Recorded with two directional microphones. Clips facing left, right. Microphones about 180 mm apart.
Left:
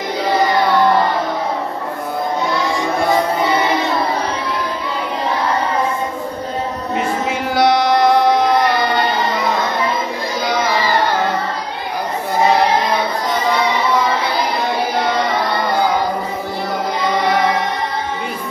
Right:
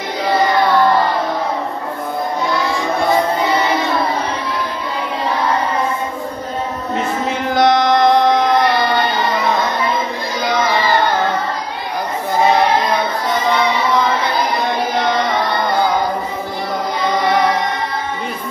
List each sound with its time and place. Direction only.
0.2 s music: 10° left (ahead or behind)
7.0 s a sound: 10° left (ahead or behind)
13.3 s music: 10° left (ahead or behind)